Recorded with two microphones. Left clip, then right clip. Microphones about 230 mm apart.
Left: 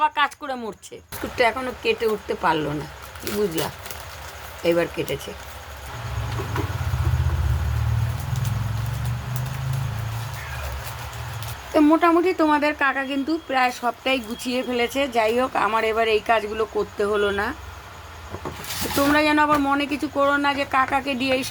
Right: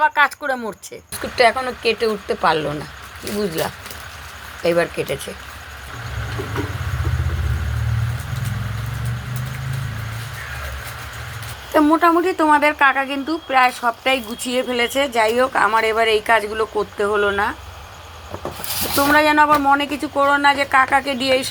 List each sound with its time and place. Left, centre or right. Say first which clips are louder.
0.0 s speech: right 5 dB; centre
4.6 s speech: right 3 dB; centre
11.7 s speech: right 3 dB; centre
18.9 s a woman's voice: right 5 dB; centre